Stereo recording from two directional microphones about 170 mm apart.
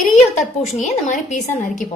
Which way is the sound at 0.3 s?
45° left (ahead or behind).